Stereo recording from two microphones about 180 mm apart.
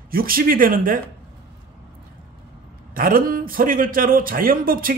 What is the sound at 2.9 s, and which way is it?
A man's voice, 55° right (ahead or behind).